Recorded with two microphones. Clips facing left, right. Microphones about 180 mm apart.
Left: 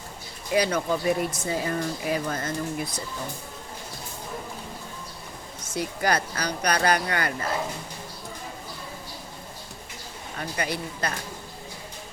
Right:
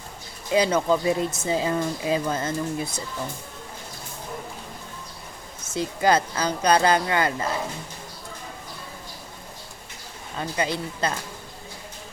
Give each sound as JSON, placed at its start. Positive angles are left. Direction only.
{"t": 0.5, "sound": "speech", "side_deg": -25}
{"t": 5.6, "sound": "speech", "side_deg": -25}
{"t": 10.6, "sound": "speech", "side_deg": -25}